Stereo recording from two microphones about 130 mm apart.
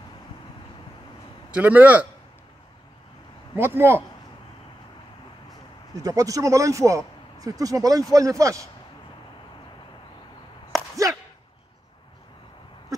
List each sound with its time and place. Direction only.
1.5 s a man's voice: 15° right (ahead or behind)
3.5 s a man's voice: 20° right (ahead or behind)
6.0 s speech: 25° right (ahead or behind)
10.7 s a sound: 25° right (ahead or behind)